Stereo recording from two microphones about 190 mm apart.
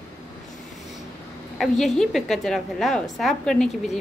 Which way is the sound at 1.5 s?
Centre (ahead or behind).